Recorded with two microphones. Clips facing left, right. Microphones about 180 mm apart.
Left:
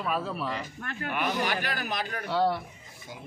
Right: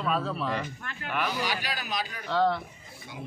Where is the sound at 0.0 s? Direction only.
5° left (ahead or behind).